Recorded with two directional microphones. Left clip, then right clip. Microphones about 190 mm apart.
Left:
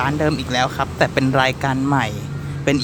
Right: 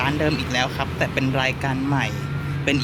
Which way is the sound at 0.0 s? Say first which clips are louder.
Left 2 dB; 15° left (ahead or behind).